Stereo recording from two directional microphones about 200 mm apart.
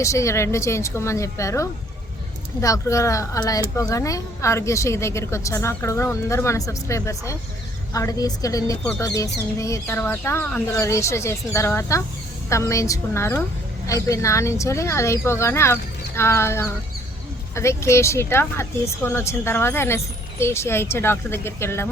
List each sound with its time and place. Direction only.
0.0 s speech: 15° left (ahead or behind)